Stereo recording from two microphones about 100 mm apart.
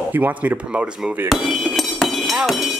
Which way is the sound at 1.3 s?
Centre (ahead or behind).